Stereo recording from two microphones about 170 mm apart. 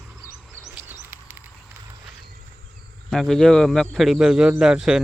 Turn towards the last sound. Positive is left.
turn(degrees=-5)  # may be behind; listen again after turning